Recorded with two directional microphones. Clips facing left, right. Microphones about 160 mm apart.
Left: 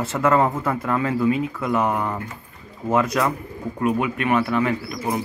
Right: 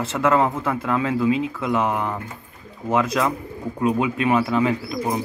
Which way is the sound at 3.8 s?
20° right (ahead or behind).